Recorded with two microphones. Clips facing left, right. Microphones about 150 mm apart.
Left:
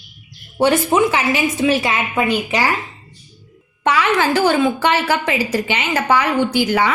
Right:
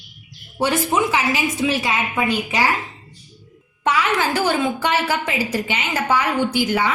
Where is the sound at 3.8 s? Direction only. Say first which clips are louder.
Left 3 dB; 75° left (ahead or behind).